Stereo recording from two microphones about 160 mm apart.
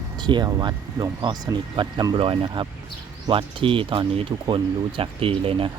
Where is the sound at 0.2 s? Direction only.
25° right (ahead or behind).